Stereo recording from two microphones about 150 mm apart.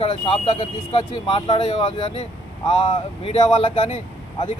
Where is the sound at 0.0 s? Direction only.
40° left (ahead or behind).